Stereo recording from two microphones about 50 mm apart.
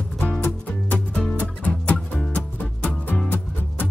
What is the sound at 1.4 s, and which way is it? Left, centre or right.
Music, left.